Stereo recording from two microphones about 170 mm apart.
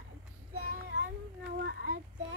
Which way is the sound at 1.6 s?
80° right.